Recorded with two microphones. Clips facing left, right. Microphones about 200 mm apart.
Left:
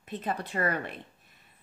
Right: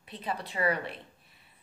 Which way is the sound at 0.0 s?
45° left (ahead or behind).